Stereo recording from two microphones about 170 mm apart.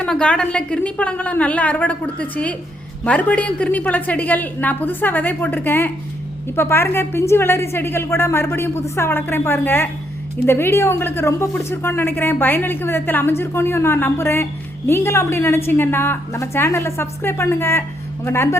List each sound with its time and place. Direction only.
0.0 s a woman's voice: 5° left (ahead or behind)